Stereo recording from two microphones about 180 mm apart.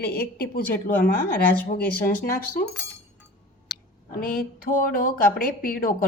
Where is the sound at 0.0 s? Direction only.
60° left (ahead or behind).